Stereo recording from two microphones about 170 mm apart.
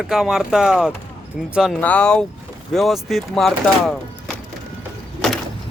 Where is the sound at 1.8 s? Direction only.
10° left (ahead or behind).